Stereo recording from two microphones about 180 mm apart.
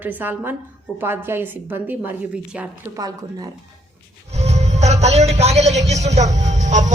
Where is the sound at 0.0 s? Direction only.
10° right (ahead or behind).